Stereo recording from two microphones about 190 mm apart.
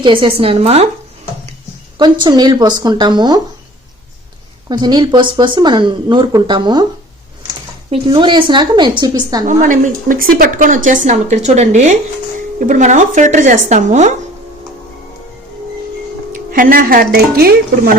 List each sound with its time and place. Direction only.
0.0 s speech: 25° right (ahead or behind)
2.0 s speech: 25° right (ahead or behind)
4.7 s speech: 25° right (ahead or behind)
7.9 s speech: 25° right (ahead or behind)
9.5 s a woman's voice: 40° right (ahead or behind)
16.3 s speech: 45° right (ahead or behind)